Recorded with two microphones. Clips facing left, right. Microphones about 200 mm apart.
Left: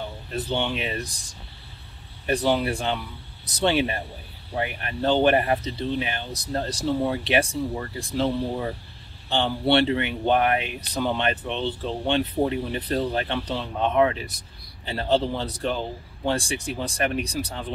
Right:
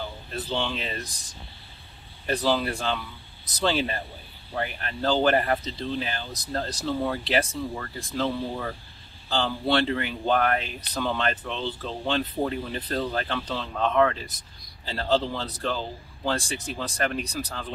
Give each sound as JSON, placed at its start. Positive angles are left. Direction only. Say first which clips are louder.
{"t": 0.3, "sound": "speech", "louder": "left 3 dB", "side_deg": 15}
{"t": 2.2, "sound": "speech", "louder": "left 2 dB", "side_deg": 20}
{"t": 6.3, "sound": "speech", "louder": "left 3 dB", "side_deg": 10}
{"t": 7.0, "sound": "speech", "louder": "left 2 dB", "side_deg": 25}